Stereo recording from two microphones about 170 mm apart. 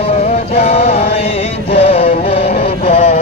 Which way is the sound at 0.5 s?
35° left (ahead or behind).